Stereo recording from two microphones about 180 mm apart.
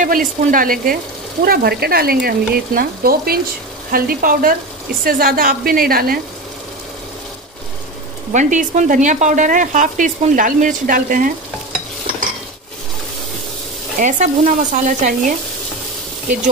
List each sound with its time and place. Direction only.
0.0 s speech: 50° right (ahead or behind)
8.3 s speech: 45° right (ahead or behind)
14.0 s speech: 45° right (ahead or behind)